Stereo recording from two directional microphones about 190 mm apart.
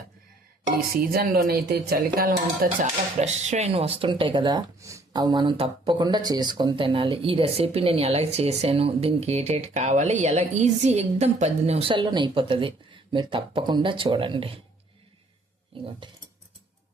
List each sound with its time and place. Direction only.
0.6 s speech: 50° right (ahead or behind)
3.2 s speech: 35° right (ahead or behind)